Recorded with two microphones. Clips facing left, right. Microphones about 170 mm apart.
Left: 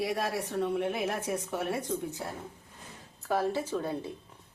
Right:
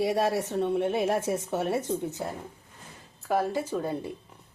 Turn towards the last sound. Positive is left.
turn(degrees=-10)  # may be behind; listen again after turning